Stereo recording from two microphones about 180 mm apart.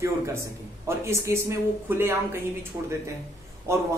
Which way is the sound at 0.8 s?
15° right (ahead or behind).